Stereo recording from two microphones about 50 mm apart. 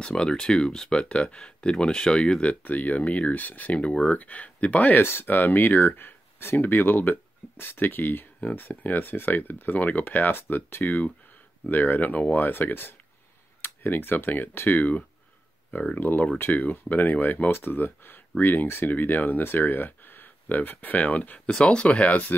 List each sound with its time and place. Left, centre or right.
0.0 s speech: centre
2.6 s speech: left
8.4 s speech: left
8.6 s speech: left
21.5 s speech: centre